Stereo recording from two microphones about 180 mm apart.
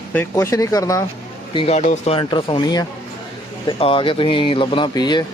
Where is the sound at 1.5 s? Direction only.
30° left (ahead or behind).